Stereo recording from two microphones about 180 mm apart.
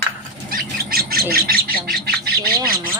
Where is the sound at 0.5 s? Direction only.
55° right (ahead or behind).